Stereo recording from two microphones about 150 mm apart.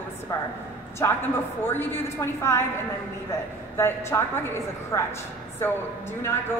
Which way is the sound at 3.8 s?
15° left (ahead or behind).